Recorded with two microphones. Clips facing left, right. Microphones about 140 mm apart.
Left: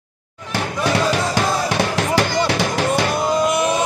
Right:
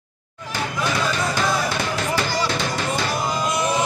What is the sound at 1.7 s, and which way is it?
Music, 70° left (ahead or behind).